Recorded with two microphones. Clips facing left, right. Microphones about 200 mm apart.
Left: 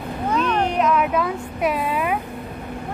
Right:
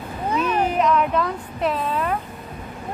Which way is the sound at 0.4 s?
10° right (ahead or behind).